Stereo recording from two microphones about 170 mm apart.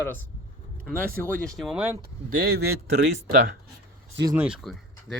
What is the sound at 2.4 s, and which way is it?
Speech, 70° right (ahead or behind).